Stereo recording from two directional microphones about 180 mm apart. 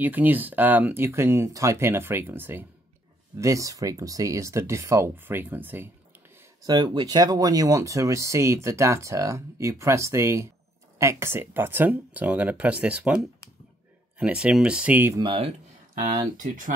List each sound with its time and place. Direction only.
0.0 s speech: 10° right (ahead or behind)
6.6 s speech: 25° right (ahead or behind)
15.2 s speech: 30° right (ahead or behind)